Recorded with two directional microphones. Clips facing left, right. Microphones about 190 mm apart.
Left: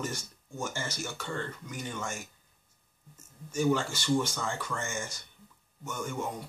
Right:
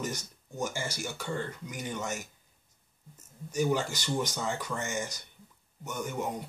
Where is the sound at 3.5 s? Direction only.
15° right (ahead or behind).